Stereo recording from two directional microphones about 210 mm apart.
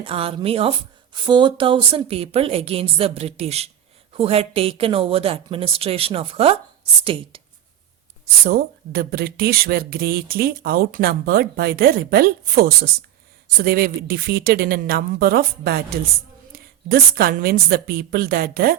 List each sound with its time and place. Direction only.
0.0 s speech: 25° right (ahead or behind)
8.4 s speech: 45° right (ahead or behind)